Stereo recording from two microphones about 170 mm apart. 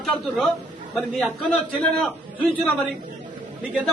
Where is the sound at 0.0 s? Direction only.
Centre (ahead or behind).